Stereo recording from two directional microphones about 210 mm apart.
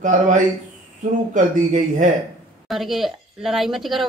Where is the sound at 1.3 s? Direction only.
35° right (ahead or behind).